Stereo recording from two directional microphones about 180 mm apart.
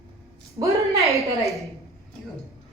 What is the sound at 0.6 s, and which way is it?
Speech, 15° right (ahead or behind).